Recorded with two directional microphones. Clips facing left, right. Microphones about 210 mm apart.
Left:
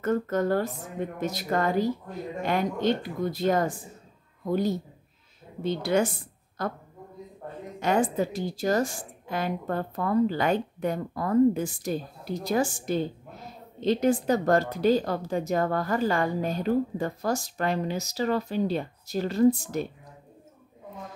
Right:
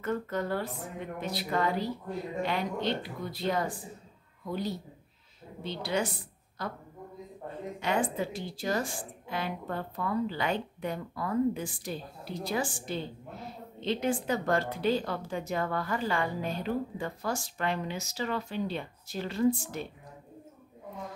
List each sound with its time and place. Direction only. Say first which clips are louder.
0.0 s a woman's voice: left 6 dB; 45° left (ahead or behind)
7.8 s a woman's voice: left 6 dB; 45° left (ahead or behind)